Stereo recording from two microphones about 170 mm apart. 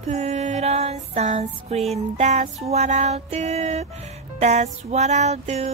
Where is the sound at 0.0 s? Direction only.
40° right (ahead or behind).